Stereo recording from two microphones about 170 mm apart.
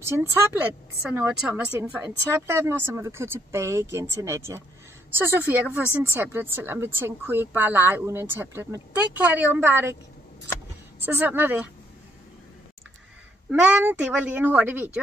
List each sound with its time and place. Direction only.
0.0 s a woman's voice: 15° right (ahead or behind)
11.1 s a woman's voice: 10° right (ahead or behind)
13.5 s a woman's voice: 10° right (ahead or behind)